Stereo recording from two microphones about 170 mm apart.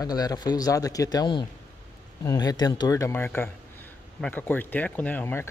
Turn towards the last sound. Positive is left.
turn(degrees=15)  # may be behind; listen again after turning